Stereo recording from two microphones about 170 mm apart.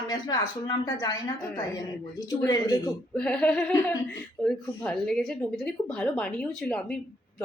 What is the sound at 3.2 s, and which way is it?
A woman's voice, 5° left (ahead or behind).